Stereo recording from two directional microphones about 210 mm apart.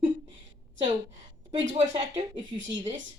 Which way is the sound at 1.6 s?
35° right (ahead or behind).